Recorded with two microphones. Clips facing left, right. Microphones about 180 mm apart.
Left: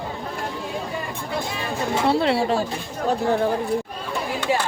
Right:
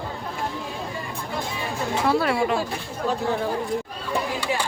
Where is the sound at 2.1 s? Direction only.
25° left (ahead or behind).